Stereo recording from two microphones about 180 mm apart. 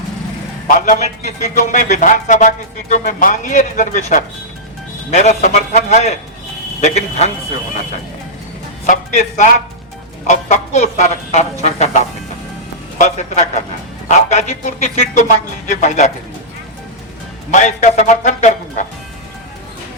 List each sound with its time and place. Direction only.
0.7 s a man's voice: 45° left (ahead or behind)
8.9 s a man's voice: 45° left (ahead or behind)
17.5 s a man's voice: 40° left (ahead or behind)